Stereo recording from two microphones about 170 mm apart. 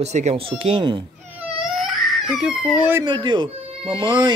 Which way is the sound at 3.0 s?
25° right (ahead or behind).